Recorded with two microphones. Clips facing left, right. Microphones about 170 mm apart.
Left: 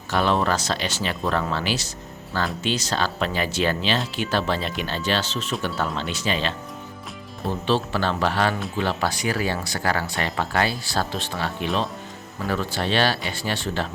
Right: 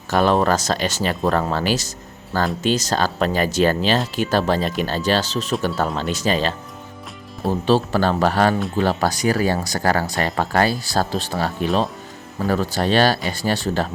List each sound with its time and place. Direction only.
0.1 s speech: 45° right (ahead or behind)